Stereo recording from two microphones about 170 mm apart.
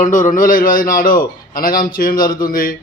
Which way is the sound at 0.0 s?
45° left (ahead or behind).